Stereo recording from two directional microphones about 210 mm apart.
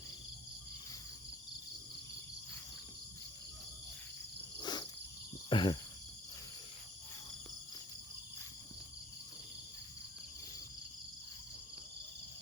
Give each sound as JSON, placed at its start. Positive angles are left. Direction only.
{"t": 4.5, "sound": "cricket", "side_deg": 20}